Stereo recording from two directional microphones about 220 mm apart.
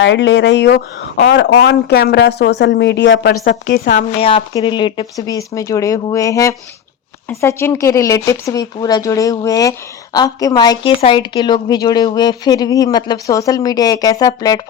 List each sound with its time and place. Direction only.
0.0 s speech: 55° left (ahead or behind); by 4.0 s 35° left (ahead or behind)
4.2 s speech: 25° left (ahead or behind)